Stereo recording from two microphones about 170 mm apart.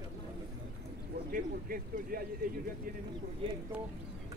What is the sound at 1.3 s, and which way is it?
Speech, 60° right (ahead or behind).